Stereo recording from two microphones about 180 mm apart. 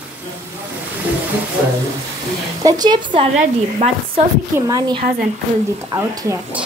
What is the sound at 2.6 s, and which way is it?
Speech, 20° right (ahead or behind).